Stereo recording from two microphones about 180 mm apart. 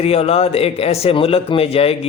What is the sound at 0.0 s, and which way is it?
A man's voice, 35° left (ahead or behind).